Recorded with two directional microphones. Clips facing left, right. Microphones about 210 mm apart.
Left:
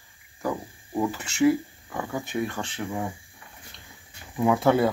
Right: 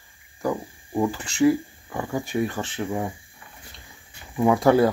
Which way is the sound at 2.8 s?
30° right (ahead or behind).